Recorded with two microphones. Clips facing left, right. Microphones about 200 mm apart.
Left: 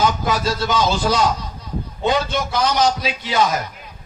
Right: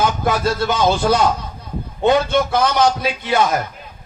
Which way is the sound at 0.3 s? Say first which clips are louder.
Right 2 dB; 55° right (ahead or behind).